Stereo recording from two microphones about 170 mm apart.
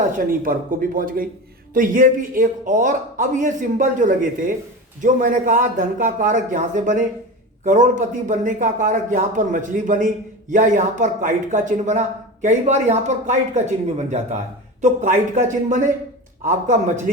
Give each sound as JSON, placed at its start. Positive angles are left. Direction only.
{"t": 0.4, "sound": "speech", "side_deg": -55}